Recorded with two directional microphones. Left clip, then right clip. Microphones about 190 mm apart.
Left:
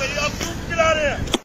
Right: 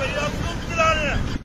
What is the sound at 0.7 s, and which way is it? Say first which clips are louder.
Vehicle: left 2 dB; 65° right (ahead or behind).